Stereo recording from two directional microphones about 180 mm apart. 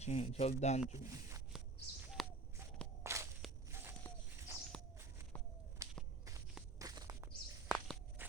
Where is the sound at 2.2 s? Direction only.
Centre (ahead or behind).